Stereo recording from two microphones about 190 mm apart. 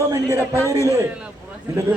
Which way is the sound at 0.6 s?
15° left (ahead or behind).